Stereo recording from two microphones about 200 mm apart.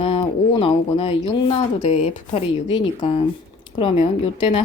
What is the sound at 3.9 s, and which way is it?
Speech, 30° left (ahead or behind).